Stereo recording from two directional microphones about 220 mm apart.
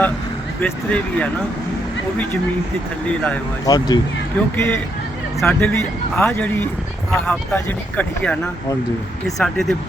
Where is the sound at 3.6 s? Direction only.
15° left (ahead or behind).